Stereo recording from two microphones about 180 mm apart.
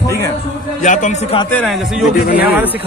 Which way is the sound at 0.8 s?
45° left (ahead or behind).